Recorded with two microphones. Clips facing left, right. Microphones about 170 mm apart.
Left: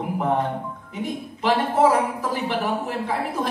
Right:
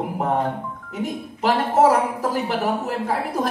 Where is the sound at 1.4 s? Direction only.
45° right (ahead or behind).